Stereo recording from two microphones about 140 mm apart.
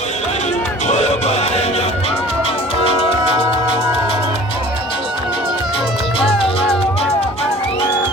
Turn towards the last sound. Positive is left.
turn(degrees=40)  # may be behind; listen again after turning